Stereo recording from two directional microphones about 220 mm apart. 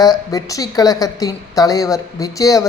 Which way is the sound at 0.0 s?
15° left (ahead or behind).